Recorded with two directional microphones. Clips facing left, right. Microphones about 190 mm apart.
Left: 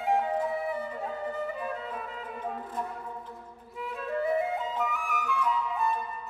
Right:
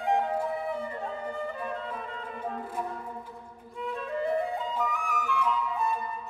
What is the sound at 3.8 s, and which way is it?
Music, 5° left (ahead or behind).